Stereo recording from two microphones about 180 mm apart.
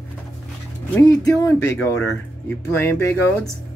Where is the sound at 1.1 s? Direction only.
20° left (ahead or behind).